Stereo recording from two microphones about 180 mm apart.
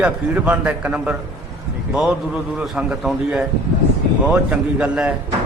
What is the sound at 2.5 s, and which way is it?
A man's voice, 5° right (ahead or behind).